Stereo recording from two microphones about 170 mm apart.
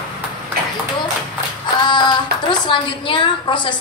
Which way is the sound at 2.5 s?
30° left (ahead or behind).